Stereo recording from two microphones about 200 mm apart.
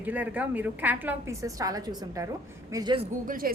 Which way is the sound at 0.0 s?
10° right (ahead or behind).